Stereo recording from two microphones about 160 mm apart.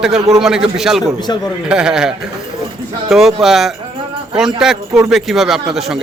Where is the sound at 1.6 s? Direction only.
5° right (ahead or behind).